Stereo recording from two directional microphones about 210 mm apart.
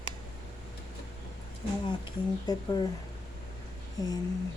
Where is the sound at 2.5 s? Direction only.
20° left (ahead or behind).